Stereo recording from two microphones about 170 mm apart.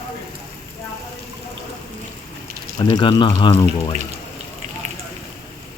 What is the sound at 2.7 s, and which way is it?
Speech, 25° left (ahead or behind).